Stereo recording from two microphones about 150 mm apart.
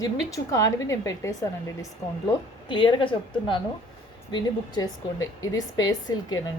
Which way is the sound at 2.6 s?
35° left (ahead or behind).